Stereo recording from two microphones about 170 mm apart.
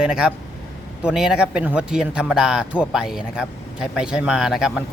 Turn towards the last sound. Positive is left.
turn(degrees=-5)  # may be behind; listen again after turning